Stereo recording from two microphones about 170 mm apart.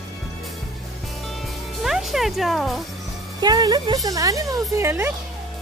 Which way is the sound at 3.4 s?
25° right (ahead or behind).